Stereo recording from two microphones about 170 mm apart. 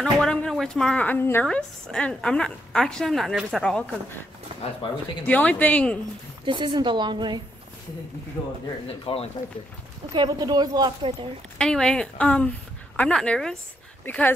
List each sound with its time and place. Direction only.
0.0 s speech: 5° left (ahead or behind)
5.2 s speech: 10° left (ahead or behind)
6.4 s a woman's voice: 30° right (ahead or behind)
9.0 s speech: 35° left (ahead or behind)
10.1 s a woman's voice: 25° right (ahead or behind)
11.5 s speech: 5° left (ahead or behind)